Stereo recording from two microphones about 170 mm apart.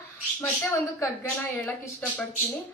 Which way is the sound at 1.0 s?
10° left (ahead or behind).